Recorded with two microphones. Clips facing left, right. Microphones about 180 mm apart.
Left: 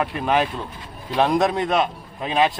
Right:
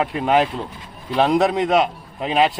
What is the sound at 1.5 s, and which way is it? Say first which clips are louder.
Speech: right 3 dB; 15° right (ahead or behind).